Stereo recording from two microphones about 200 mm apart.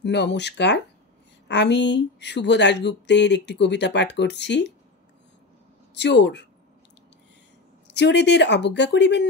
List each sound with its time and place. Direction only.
0.0 s speech: 60° left (ahead or behind)
5.9 s speech: 60° left (ahead or behind)
7.9 s speech: 60° left (ahead or behind)